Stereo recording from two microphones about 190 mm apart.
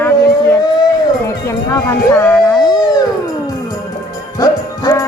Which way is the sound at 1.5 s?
15° left (ahead or behind).